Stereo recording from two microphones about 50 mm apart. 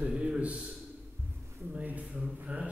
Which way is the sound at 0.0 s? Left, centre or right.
Right.